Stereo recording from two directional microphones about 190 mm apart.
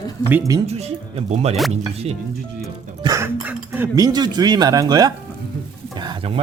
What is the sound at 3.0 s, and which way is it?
Speech, 15° right (ahead or behind).